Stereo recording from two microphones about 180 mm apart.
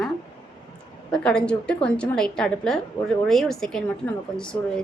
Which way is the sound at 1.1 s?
5° left (ahead or behind).